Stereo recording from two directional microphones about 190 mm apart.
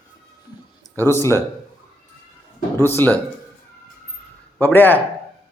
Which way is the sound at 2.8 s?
10° left (ahead or behind).